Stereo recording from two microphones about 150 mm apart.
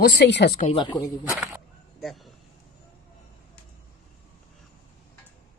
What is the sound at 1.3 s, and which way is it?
Speech, 20° right (ahead or behind).